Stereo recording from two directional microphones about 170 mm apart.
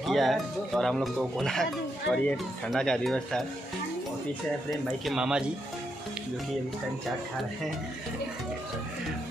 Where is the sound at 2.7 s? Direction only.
5° left (ahead or behind).